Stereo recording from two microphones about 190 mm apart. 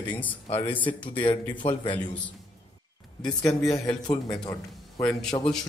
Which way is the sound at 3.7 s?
20° left (ahead or behind).